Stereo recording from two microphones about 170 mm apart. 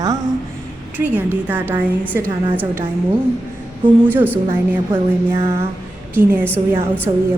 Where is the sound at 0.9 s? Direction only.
10° right (ahead or behind).